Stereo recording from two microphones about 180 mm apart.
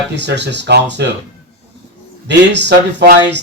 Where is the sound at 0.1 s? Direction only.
75° right (ahead or behind).